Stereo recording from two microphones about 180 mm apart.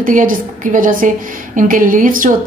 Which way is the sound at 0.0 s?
50° right (ahead or behind).